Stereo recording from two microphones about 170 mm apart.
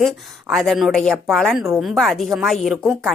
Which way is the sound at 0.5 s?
Centre (ahead or behind).